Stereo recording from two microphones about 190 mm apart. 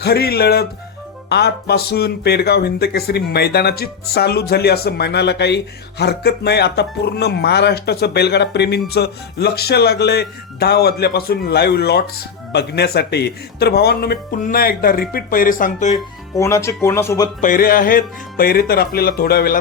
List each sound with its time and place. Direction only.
0.0 s speech: 55° left (ahead or behind)
16.3 s speech: 15° left (ahead or behind)
17.4 s speech: 45° left (ahead or behind)